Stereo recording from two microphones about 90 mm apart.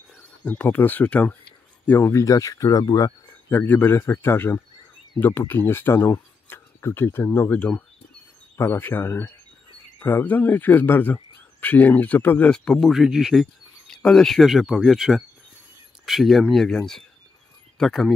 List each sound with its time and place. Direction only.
0.4 s speech: 15° left (ahead or behind)
2.1 s speech: 35° left (ahead or behind)
3.4 s speech: 20° left (ahead or behind)
8.5 s speech: 25° left (ahead or behind)
12.5 s speech: 5° left (ahead or behind)